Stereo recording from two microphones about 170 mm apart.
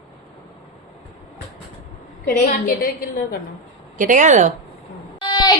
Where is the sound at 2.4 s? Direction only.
55° left (ahead or behind).